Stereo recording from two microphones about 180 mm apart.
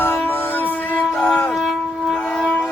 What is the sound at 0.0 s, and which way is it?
Music, 10° left (ahead or behind).